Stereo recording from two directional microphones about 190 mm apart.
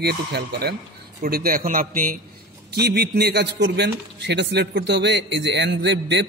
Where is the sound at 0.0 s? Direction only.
55° right (ahead or behind).